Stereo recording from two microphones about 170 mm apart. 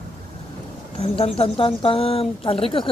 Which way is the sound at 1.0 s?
35° left (ahead or behind).